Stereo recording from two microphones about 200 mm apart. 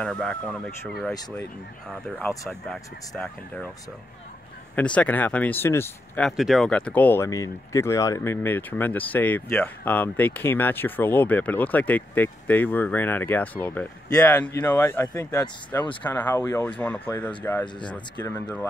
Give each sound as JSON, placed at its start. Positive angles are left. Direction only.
{"t": 0.0, "sound": "speech", "side_deg": 5}
{"t": 4.7, "sound": "speech", "side_deg": 5}